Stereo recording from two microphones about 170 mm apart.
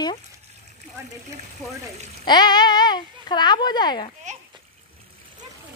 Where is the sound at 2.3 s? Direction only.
25° left (ahead or behind).